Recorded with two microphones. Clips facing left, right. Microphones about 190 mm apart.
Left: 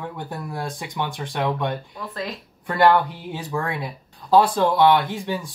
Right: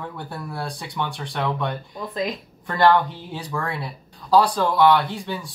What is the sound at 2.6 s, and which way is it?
Speech, 15° left (ahead or behind).